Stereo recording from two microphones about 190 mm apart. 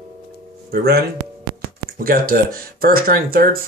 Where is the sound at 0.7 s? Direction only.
55° right (ahead or behind).